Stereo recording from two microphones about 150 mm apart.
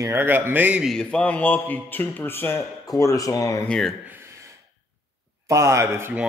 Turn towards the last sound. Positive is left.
turn(degrees=-15)  # may be behind; listen again after turning